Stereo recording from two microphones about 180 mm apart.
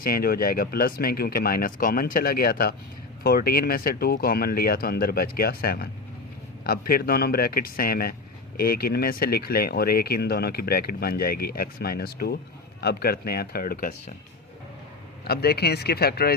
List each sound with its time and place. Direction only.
0.0 s speech: 55° left (ahead or behind)
15.2 s speech: 60° left (ahead or behind)